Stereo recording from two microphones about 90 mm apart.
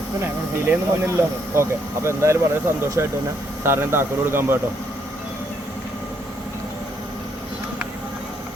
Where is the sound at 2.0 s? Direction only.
30° right (ahead or behind).